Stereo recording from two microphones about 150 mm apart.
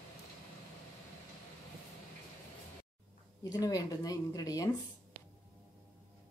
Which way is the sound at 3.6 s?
25° left (ahead or behind).